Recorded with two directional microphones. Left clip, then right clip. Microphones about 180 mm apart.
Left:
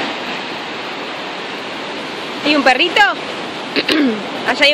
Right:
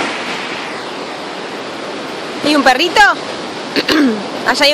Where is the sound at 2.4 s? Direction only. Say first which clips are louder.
Right 1 dB; 5° right (ahead or behind).